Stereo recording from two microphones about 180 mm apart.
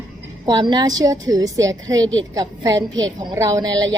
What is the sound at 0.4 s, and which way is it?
A woman's voice, 25° right (ahead or behind).